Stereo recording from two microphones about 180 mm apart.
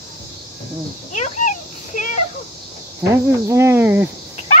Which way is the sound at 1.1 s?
45° left (ahead or behind).